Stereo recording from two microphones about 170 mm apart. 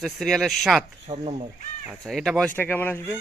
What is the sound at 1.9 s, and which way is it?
Speech, centre (ahead or behind).